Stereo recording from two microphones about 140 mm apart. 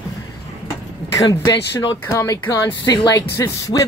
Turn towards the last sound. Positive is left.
turn(degrees=25)  # may be behind; listen again after turning